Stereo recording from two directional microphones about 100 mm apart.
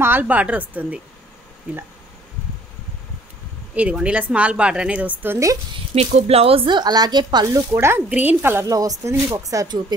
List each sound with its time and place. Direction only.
0.0 s a woman's voice: 20° right (ahead or behind)
3.7 s a woman's voice: 15° right (ahead or behind)
5.9 s speech: 85° right; by 7.6 s 40° right (ahead or behind)
7.7 s speech: 20° right (ahead or behind)
8.6 s speech: 35° right (ahead or behind)